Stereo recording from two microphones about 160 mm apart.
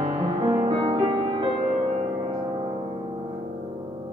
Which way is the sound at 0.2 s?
30° right (ahead or behind).